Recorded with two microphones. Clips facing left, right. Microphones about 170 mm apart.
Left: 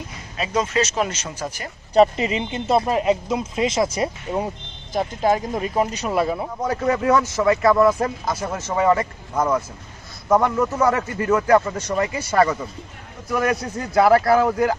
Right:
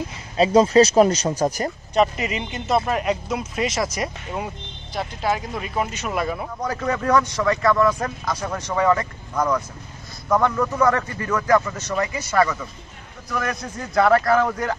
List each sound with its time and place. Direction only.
0.4 s speech: 30° right (ahead or behind)
2.0 s speech: 30° left (ahead or behind)
4.9 s speech: 45° left (ahead or behind); by 6.9 s 20° left (ahead or behind)
6.9 s a man's voice: 10° left (ahead or behind)
7.4 s speech: 25° left (ahead or behind)
13.3 s a man's voice: 10° left (ahead or behind)